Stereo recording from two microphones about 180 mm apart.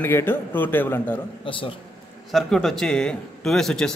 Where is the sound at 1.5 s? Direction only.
30° left (ahead or behind).